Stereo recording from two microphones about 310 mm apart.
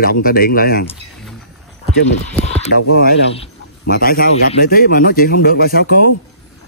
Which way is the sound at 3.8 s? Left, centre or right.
Left.